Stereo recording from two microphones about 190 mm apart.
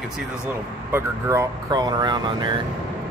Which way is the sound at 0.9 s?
15° right (ahead or behind).